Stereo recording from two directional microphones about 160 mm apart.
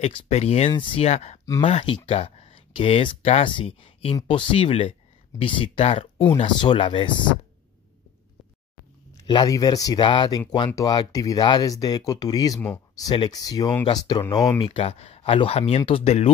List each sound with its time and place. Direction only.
0.0 s speech: 40° left (ahead or behind)
9.1 s speech: 25° left (ahead or behind); by 16.3 s 40° left (ahead or behind)